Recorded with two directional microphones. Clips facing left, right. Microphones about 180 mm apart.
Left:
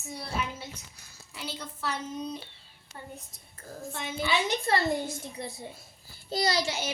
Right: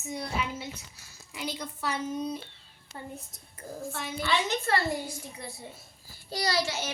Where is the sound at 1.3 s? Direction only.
15° right (ahead or behind).